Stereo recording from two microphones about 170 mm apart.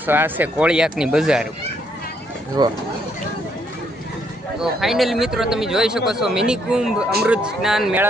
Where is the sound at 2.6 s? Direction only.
25° right (ahead or behind).